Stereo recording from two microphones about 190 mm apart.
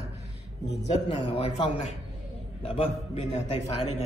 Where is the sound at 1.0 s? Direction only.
35° left (ahead or behind).